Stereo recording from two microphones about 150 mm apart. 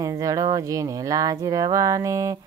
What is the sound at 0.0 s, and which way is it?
Speech, 25° right (ahead or behind).